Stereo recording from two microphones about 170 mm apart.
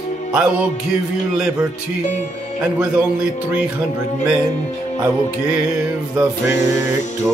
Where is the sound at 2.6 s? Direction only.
5° right (ahead or behind).